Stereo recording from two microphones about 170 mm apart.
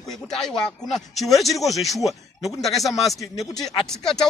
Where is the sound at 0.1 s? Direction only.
Centre (ahead or behind).